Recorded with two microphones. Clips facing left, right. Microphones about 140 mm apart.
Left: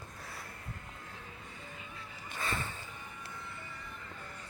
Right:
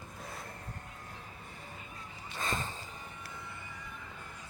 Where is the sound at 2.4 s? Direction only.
15° right (ahead or behind).